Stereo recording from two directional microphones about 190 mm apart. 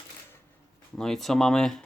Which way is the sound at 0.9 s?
Centre (ahead or behind).